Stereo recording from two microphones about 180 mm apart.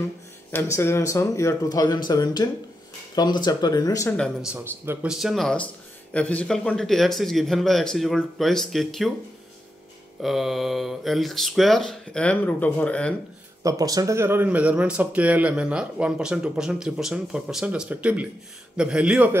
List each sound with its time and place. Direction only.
0.5 s speech: 15° left (ahead or behind)
4.2 s a man's voice: 5° right (ahead or behind)
10.2 s a man's voice: centre (ahead or behind)
13.6 s a man's voice: 20° right (ahead or behind)